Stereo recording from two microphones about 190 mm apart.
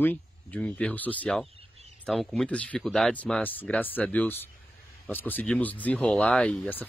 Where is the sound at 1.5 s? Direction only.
30° right (ahead or behind).